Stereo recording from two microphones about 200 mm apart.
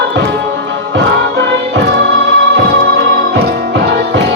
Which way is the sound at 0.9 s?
60° right (ahead or behind).